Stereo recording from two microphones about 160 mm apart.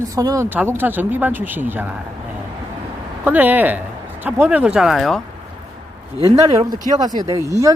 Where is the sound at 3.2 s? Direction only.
10° right (ahead or behind).